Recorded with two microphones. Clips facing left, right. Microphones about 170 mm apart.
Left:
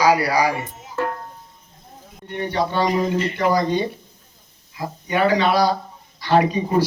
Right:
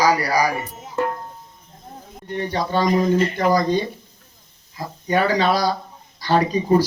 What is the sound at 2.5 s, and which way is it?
A man's voice, 40° right (ahead or behind).